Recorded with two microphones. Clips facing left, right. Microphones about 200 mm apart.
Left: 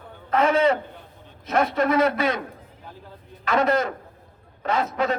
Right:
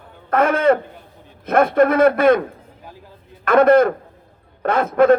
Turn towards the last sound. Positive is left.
turn(degrees=-55)  # may be behind; listen again after turning